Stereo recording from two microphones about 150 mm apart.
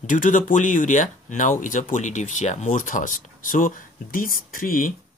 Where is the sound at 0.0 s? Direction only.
60° left (ahead or behind).